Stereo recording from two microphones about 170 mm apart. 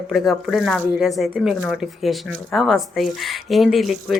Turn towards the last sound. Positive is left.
turn(degrees=0)  # may be behind; listen again after turning